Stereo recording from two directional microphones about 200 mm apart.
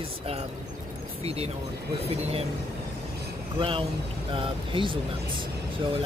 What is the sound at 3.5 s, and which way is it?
Speech, 25° right (ahead or behind).